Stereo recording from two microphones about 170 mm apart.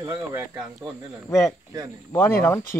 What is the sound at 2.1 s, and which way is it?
Speech, 10° left (ahead or behind).